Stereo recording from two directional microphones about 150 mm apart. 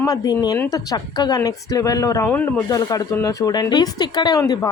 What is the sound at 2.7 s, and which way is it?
A woman's voice, 25° left (ahead or behind).